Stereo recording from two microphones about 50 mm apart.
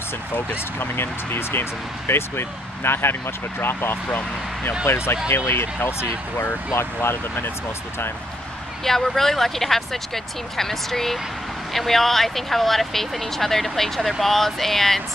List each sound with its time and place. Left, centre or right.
0.7 s speech: left
8.8 s speech: centre